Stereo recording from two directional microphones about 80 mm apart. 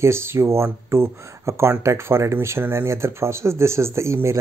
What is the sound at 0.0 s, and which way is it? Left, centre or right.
Speech, right.